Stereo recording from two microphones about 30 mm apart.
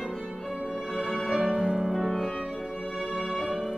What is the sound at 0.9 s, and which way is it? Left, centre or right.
Music, centre.